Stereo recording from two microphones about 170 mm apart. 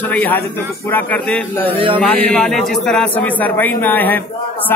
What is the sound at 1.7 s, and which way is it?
Speech, 35° right (ahead or behind).